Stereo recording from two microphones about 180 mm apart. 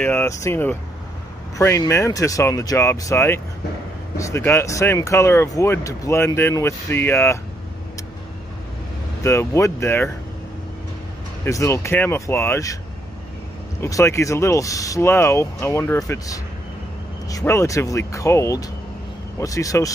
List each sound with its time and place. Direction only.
0.0 s speech: 15° left (ahead or behind)
9.2 s speech: 15° left (ahead or behind)
11.4 s speech: 15° left (ahead or behind)
13.7 s speech: 15° left (ahead or behind)